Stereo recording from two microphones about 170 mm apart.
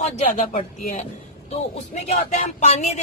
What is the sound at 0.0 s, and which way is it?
Speech, 45° left (ahead or behind).